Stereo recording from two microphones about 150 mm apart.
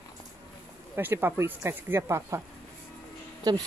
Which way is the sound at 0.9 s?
15° right (ahead or behind).